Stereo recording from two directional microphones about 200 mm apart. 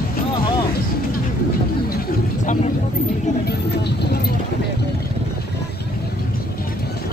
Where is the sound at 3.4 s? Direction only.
55° left (ahead or behind).